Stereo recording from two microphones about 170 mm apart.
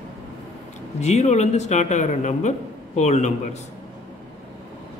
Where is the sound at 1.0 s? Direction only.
40° left (ahead or behind).